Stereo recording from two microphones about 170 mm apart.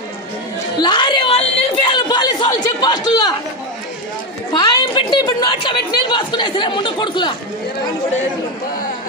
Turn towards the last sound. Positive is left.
turn(degrees=30)  # may be behind; listen again after turning